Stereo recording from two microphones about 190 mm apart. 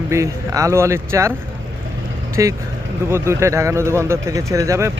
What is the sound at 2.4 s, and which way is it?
Speech, 15° right (ahead or behind).